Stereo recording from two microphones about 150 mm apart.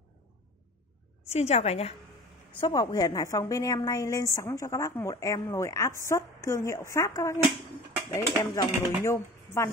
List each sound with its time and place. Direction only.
1.3 s a woman's voice: 45° left (ahead or behind)
2.6 s a woman's voice: 25° left (ahead or behind)